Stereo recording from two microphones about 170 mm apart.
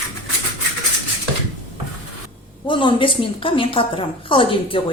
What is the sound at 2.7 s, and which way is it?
A woman's voice, 30° left (ahead or behind).